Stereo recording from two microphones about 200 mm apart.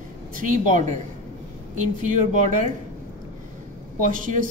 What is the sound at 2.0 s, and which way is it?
Speech, 40° right (ahead or behind).